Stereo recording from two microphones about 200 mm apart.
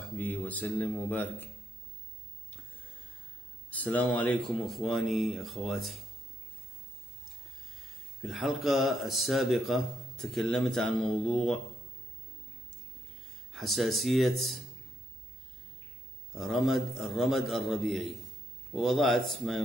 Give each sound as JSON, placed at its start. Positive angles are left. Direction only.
{"t": 0.2, "sound": "speech", "side_deg": 10}
{"t": 3.7, "sound": "speech", "side_deg": 10}
{"t": 8.2, "sound": "speech", "side_deg": 0}
{"t": 13.5, "sound": "speech", "side_deg": 0}
{"t": 16.3, "sound": "speech", "side_deg": 0}